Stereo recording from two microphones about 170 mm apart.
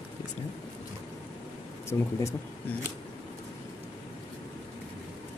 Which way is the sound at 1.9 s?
15° left (ahead or behind).